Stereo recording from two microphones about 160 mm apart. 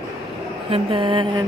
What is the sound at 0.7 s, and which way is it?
Speech, 35° right (ahead or behind).